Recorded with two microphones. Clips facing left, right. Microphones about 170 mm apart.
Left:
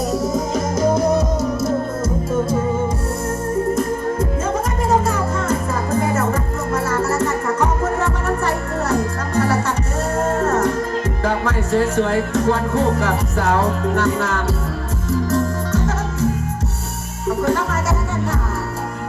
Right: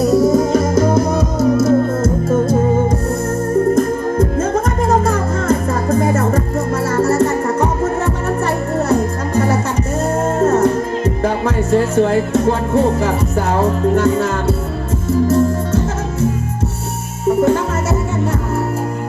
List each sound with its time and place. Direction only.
0.1 s music: 30° right (ahead or behind)
0.3 s music: 60° right (ahead or behind)
4.9 s music: 40° right (ahead or behind)
8.9 s music: 20° right (ahead or behind)
17.2 s music: 25° right (ahead or behind)